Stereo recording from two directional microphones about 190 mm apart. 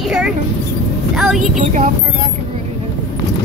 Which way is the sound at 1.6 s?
40° right (ahead or behind).